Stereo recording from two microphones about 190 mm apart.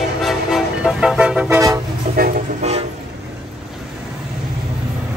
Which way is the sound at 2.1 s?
50° right (ahead or behind).